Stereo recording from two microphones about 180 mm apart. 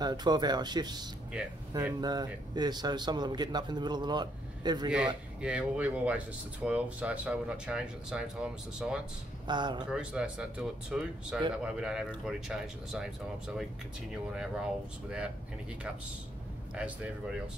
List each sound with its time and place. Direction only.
0.0 s a man's voice: 25° right (ahead or behind)
4.9 s speech: 5° right (ahead or behind)
9.5 s a man's voice: 25° right (ahead or behind)
9.8 s speech: 5° right (ahead or behind)
15.0 s speech: 5° right (ahead or behind)
16.7 s speech: 5° right (ahead or behind)